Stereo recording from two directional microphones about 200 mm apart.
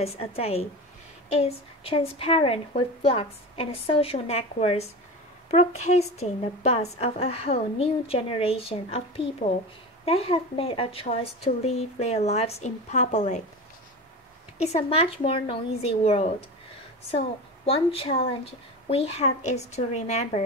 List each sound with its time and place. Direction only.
0.2 s a woman's voice: 30° left (ahead or behind)
14.6 s a woman's voice: 30° left (ahead or behind)
17.6 s a woman's voice: 30° left (ahead or behind)